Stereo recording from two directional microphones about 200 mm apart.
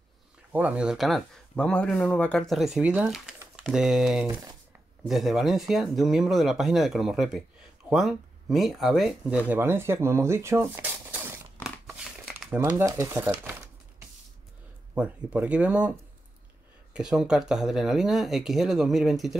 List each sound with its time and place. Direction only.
0.5 s speech: 10° right (ahead or behind)
4.3 s speech: 20° right (ahead or behind)
5.0 s speech: centre (ahead or behind)
9.5 s a sound: 10° right (ahead or behind)
15.0 s speech: 5° right (ahead or behind)
16.9 s speech: 5° right (ahead or behind)